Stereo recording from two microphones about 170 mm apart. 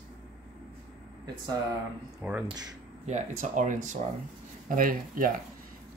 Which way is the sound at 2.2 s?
10° right (ahead or behind).